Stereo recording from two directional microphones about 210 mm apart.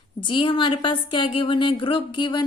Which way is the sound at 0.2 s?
25° left (ahead or behind).